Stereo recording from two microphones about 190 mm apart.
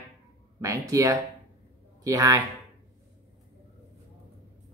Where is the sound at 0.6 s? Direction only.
15° right (ahead or behind).